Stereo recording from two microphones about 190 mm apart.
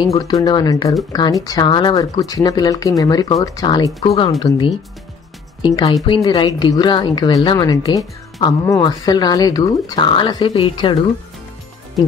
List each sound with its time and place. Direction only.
0.2 s speech: 20° left (ahead or behind)